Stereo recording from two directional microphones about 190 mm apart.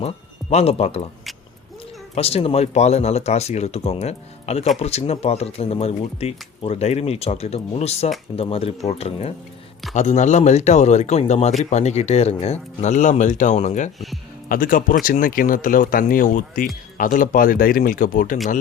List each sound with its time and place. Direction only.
0.5 s speech: 30° left (ahead or behind)
2.1 s speech: 30° left (ahead or behind)